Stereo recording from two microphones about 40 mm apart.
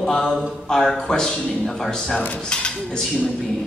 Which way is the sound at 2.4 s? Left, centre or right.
Left.